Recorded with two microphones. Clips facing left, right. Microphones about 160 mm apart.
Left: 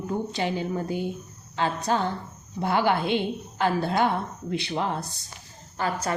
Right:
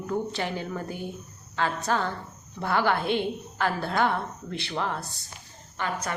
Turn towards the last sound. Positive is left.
turn(degrees=35)  # may be behind; listen again after turning